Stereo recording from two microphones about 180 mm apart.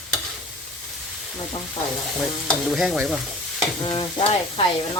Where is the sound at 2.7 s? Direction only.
5° right (ahead or behind).